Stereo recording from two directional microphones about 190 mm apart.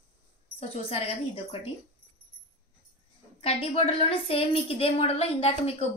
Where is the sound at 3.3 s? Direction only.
30° left (ahead or behind).